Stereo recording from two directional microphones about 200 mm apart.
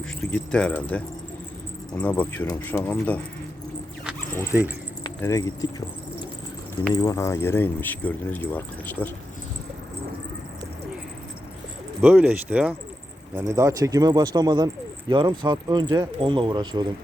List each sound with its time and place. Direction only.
0.2 s speech: 5° left (ahead or behind)
4.5 s speech: 5° right (ahead or behind)
5.0 s keys jangling: 15° left (ahead or behind)
6.9 s speech: 20° left (ahead or behind)
12.0 s speech: 10° right (ahead or behind)